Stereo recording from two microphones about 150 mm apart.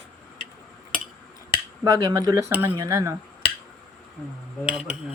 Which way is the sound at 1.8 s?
20° right (ahead or behind).